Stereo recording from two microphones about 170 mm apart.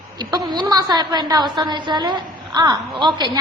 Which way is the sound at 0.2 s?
25° right (ahead or behind).